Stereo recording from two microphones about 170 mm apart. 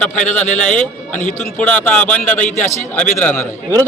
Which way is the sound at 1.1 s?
45° left (ahead or behind).